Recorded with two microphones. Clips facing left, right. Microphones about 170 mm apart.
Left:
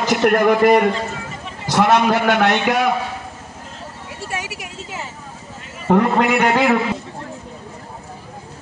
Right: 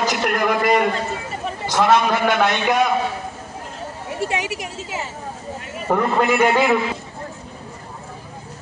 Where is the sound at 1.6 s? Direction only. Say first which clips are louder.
Left 2 dB; 70° left (ahead or behind).